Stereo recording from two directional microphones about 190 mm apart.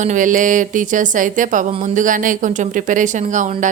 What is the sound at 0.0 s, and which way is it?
A woman's voice, 40° right (ahead or behind).